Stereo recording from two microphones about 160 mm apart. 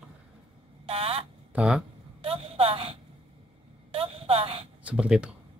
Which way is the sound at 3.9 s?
35° right (ahead or behind).